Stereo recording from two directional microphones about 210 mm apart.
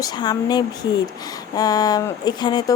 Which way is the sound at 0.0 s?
20° left (ahead or behind).